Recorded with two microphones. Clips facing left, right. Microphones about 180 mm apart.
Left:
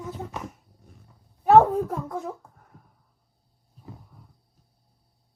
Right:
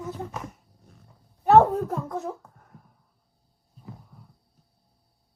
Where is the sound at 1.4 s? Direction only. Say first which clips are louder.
Left 1 dB; centre (ahead or behind).